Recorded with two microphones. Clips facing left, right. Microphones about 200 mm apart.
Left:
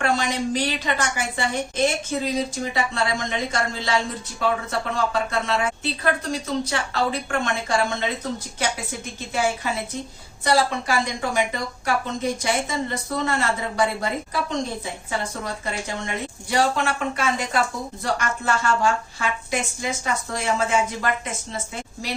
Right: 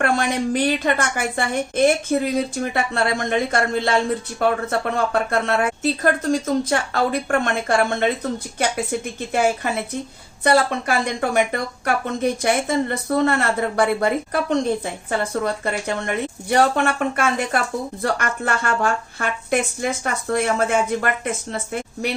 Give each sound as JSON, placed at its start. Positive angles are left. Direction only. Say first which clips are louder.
{"t": 0.0, "sound": "a woman's voice", "louder": "right 3 dB", "side_deg": -55}
{"t": 10.4, "sound": "a woman's voice", "louder": "right 3 dB", "side_deg": -60}
{"t": 16.0, "sound": "a woman's voice", "louder": "right 5 dB", "side_deg": -55}